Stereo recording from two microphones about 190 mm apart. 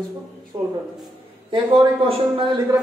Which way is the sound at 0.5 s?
20° right (ahead or behind).